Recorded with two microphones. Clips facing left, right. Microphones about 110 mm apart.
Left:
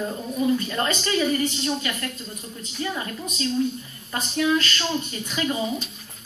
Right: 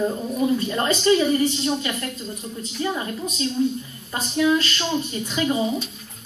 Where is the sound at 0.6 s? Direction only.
25° right (ahead or behind).